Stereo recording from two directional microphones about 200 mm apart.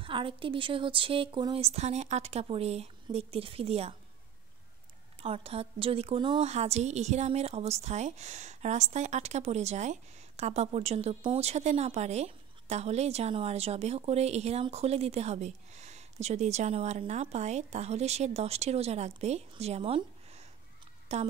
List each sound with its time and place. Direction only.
0.0 s speech: 25° right (ahead or behind)
5.2 s a woman's voice: 30° right (ahead or behind)